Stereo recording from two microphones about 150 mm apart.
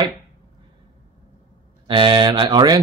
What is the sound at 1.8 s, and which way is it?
Speech, 30° right (ahead or behind).